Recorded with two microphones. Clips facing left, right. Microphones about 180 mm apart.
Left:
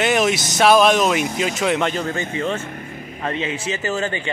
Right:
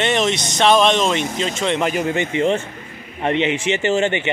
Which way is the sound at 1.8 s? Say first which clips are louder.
Right 3 dB; 15° right (ahead or behind).